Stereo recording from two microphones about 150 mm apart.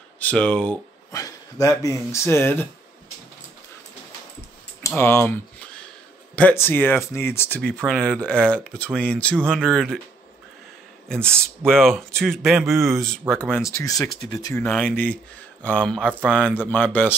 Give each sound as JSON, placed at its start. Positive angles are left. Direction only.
{"t": 0.2, "sound": "speech", "side_deg": 10}
{"t": 1.1, "sound": "speech", "side_deg": 20}
{"t": 4.8, "sound": "speech", "side_deg": 15}
{"t": 9.4, "sound": "speech", "side_deg": -10}
{"t": 9.7, "sound": "speech", "side_deg": 0}
{"t": 11.1, "sound": "speech", "side_deg": -15}
{"t": 11.6, "sound": "speech", "side_deg": 5}
{"t": 13.7, "sound": "speech", "side_deg": 20}
{"t": 14.6, "sound": "speech", "side_deg": 5}